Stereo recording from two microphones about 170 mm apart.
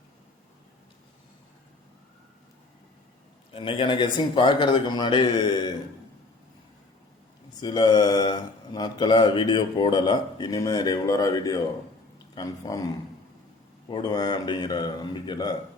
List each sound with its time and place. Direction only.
3.5 s a man's voice: 30° left (ahead or behind)
7.6 s a man's voice: 25° left (ahead or behind)